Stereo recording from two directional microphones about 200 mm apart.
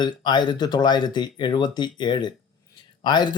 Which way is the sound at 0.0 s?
20° left (ahead or behind).